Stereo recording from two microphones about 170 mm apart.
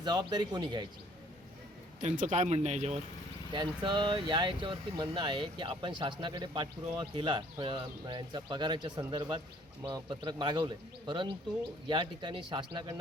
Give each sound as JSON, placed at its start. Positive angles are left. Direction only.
{"t": 0.0, "sound": "speech", "side_deg": -25}
{"t": 2.0, "sound": "speech", "side_deg": -45}
{"t": 3.5, "sound": "speech", "side_deg": -25}